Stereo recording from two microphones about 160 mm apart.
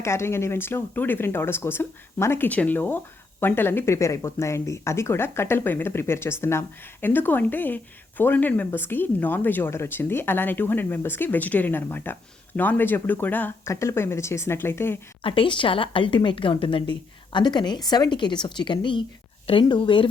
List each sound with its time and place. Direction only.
0.0 s speech: 15° left (ahead or behind)
15.2 s a woman's voice: 30° left (ahead or behind)